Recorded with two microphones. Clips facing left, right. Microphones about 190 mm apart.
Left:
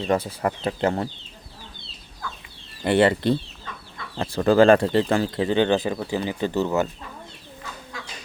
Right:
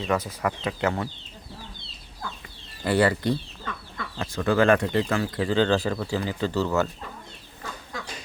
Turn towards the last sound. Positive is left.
turn(degrees=20)  # may be behind; listen again after turning